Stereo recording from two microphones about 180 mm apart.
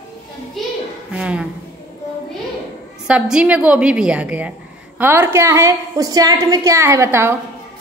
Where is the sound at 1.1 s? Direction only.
5° right (ahead or behind).